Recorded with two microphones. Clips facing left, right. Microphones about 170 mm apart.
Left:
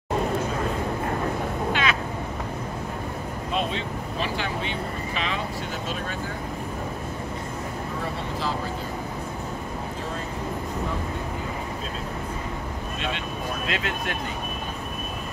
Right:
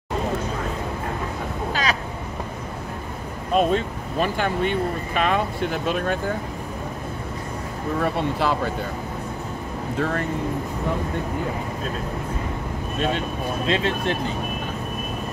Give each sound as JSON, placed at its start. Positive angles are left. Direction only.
{"t": 1.7, "sound": "vehicle", "side_deg": -40}
{"t": 3.5, "sound": "speech", "side_deg": -50}
{"t": 8.0, "sound": "speech", "side_deg": -65}
{"t": 13.7, "sound": "speech", "side_deg": -30}